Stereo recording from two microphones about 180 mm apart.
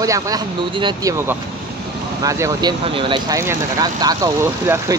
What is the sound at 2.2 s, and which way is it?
Speech, 20° right (ahead or behind).